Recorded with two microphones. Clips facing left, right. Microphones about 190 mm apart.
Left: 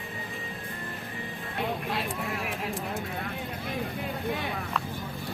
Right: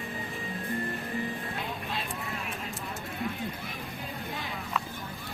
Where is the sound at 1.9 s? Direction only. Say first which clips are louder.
Left 4 dB; 75° left (ahead or behind).